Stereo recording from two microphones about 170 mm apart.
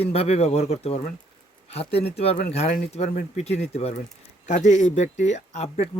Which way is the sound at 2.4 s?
40° left (ahead or behind).